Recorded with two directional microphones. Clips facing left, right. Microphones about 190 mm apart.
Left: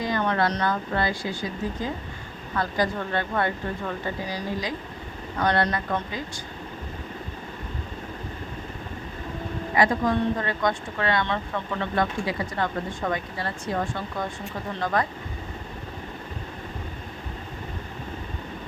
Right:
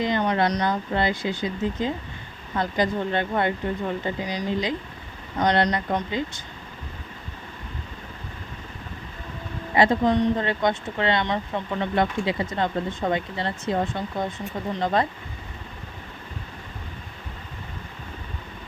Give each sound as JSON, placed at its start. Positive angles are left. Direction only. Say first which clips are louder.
{"t": 0.0, "sound": "speech", "louder": "right 2 dB", "side_deg": -20}
{"t": 9.7, "sound": "speech", "louder": "right 3 dB", "side_deg": -25}